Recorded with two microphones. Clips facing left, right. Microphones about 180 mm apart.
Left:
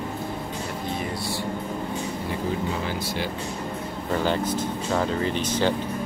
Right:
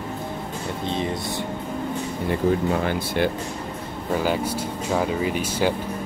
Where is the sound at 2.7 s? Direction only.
60° right (ahead or behind).